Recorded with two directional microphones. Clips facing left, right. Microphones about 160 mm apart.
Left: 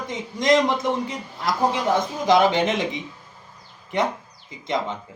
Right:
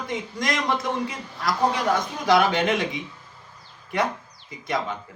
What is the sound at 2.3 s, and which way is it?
Speech, 20° left (ahead or behind).